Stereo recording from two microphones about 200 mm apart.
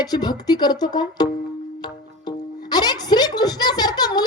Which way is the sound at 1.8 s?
20° left (ahead or behind).